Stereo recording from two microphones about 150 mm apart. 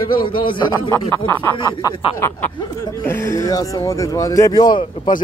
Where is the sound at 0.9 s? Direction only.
15° left (ahead or behind).